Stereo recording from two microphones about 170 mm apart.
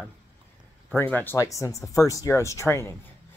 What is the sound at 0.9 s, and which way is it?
Speech, 10° left (ahead or behind).